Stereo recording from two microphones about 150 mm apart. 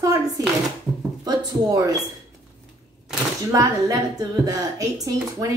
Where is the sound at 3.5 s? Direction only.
20° right (ahead or behind).